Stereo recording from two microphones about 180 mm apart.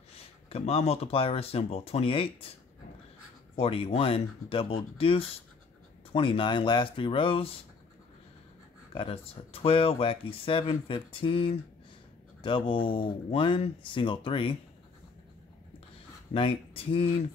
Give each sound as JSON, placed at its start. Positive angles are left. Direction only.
{"t": 0.5, "sound": "speech", "side_deg": 35}
{"t": 3.5, "sound": "speech", "side_deg": 30}
{"t": 8.9, "sound": "speech", "side_deg": 30}
{"t": 16.3, "sound": "speech", "side_deg": 30}